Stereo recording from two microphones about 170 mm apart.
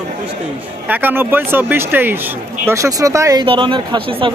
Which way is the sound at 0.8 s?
10° right (ahead or behind).